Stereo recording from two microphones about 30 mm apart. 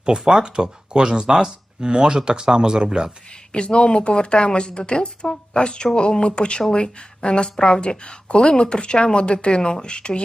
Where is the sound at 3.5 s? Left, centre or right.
Left.